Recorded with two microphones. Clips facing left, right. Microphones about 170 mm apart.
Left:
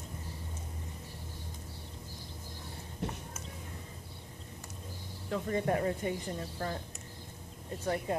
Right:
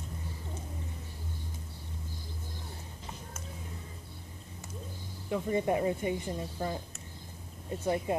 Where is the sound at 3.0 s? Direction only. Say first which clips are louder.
Left 9 dB; 65° left (ahead or behind).